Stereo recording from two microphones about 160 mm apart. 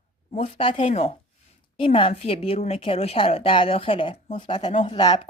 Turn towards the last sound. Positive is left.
turn(degrees=30)  # may be behind; listen again after turning